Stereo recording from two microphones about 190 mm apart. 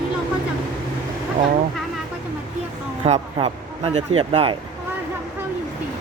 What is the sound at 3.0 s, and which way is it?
Speech, 35° right (ahead or behind).